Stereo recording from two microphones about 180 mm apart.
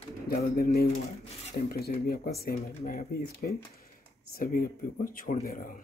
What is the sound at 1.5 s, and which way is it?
Speech, 60° left (ahead or behind).